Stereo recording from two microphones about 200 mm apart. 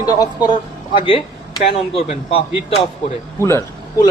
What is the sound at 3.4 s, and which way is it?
Speech, 15° left (ahead or behind).